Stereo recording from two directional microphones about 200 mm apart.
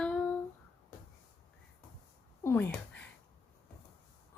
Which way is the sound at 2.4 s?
10° left (ahead or behind).